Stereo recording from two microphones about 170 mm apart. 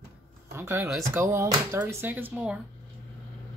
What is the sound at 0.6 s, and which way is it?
Speech, 15° right (ahead or behind).